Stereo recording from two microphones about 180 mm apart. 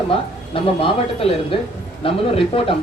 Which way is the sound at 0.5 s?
30° left (ahead or behind).